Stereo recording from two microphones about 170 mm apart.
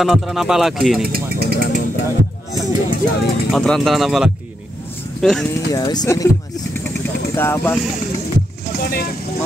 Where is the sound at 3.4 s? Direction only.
5° left (ahead or behind).